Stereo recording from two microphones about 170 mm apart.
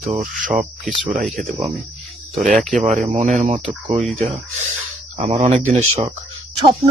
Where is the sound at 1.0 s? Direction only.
50° right (ahead or behind).